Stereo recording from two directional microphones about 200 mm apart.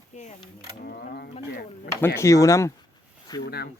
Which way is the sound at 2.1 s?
15° left (ahead or behind).